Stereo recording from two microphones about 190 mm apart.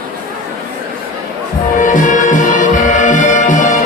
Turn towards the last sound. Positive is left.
turn(degrees=40)  # may be behind; listen again after turning